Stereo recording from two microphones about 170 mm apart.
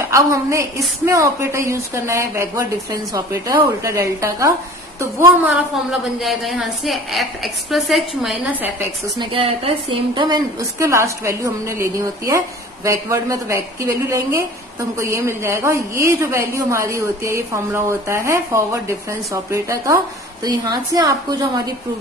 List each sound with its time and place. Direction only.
0.1 s a woman's voice: 15° right (ahead or behind)
5.4 s a woman's voice: 5° right (ahead or behind)
9.2 s a woman's voice: 35° right (ahead or behind)